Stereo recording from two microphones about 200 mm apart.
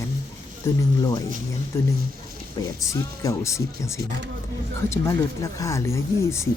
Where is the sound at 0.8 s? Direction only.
15° left (ahead or behind).